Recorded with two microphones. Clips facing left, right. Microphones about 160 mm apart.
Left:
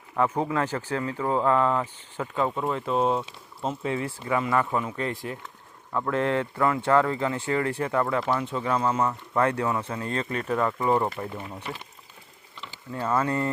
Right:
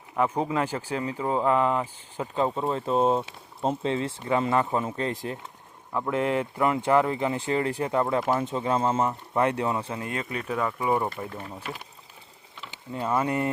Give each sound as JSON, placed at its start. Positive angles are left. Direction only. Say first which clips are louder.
{"t": 0.2, "sound": "speech", "louder": "even", "side_deg": -15}
{"t": 2.6, "sound": "speech", "louder": "right 2 dB", "side_deg": -35}
{"t": 5.9, "sound": "speech", "louder": "even", "side_deg": -15}
{"t": 12.9, "sound": "speech", "louder": "even", "side_deg": -20}